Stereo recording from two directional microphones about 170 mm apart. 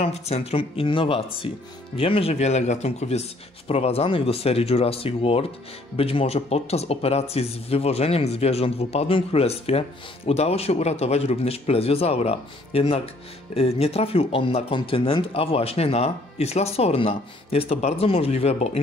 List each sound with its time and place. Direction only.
0.0 s speech: 40° left (ahead or behind)